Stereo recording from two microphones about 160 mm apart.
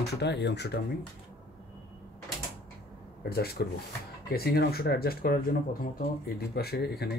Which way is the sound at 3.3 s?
75° left (ahead or behind).